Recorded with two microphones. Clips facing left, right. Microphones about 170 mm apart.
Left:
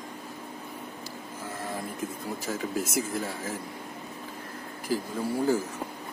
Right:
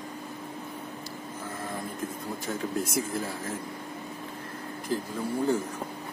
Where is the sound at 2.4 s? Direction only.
Centre (ahead or behind).